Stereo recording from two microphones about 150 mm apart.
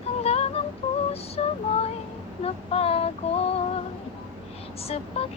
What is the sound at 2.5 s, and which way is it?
Speech, 40° left (ahead or behind).